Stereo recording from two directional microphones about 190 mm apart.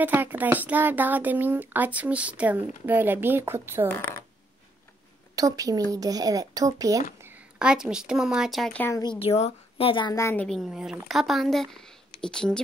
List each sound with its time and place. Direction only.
0.0 s speech: 10° right (ahead or behind)
3.9 s speech: 10° left (ahead or behind)
5.3 s speech: 20° right (ahead or behind)
7.2 s a woman's voice: 5° right (ahead or behind)
9.0 s a woman's voice: 25° left (ahead or behind); by 12.6 s 5° left (ahead or behind)